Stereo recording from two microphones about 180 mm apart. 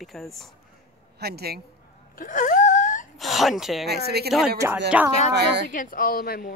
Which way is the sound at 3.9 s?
65° right (ahead or behind).